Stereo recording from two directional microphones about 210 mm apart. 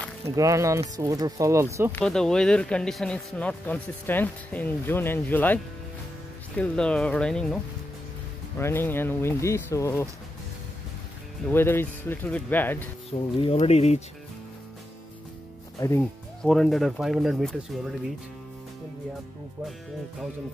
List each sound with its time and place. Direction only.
0.4 s speech: 15° right (ahead or behind)
1.9 s speech: 5° left (ahead or behind)
11.4 s speech: 10° left (ahead or behind)
13.4 s speech: 30° left (ahead or behind)
15.8 s speech: 15° left (ahead or behind)
16.4 s speech: centre (ahead or behind)